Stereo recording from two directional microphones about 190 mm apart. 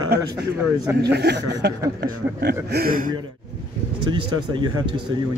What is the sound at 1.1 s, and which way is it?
Speech, 60° right (ahead or behind).